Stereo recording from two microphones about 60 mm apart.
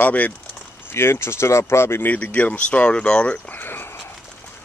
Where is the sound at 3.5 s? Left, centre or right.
Left.